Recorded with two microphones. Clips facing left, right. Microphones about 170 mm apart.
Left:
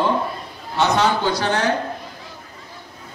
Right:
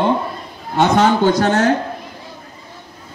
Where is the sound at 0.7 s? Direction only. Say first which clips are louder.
Right 5 dB; 50° right (ahead or behind).